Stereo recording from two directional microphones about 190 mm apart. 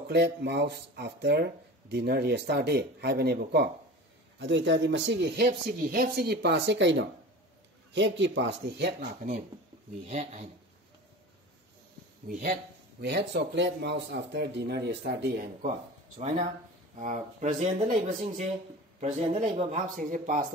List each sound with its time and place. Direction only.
0.1 s speech: 60° right (ahead or behind)
4.4 s speech: 70° right (ahead or behind)
5.5 s speech: 45° right (ahead or behind); by 9.3 s 60° right (ahead or behind)
10.0 s speech: 35° right (ahead or behind)
12.3 s speech: 45° right (ahead or behind)
13.0 s speech: 60° right (ahead or behind)
16.2 s speech: 40° right (ahead or behind)